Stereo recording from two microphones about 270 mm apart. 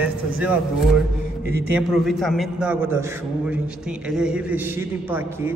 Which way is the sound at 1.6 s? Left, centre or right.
Centre.